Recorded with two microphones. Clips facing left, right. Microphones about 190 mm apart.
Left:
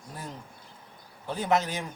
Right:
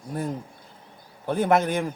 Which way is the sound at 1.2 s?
55° right (ahead or behind).